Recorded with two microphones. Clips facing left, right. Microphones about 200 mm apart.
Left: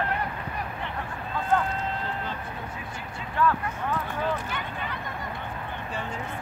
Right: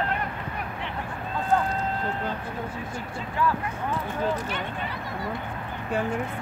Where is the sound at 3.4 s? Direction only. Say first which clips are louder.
Left 1 dB; 10° right (ahead or behind).